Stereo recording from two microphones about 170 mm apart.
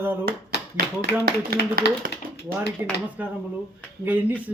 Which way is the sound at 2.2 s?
55° right (ahead or behind).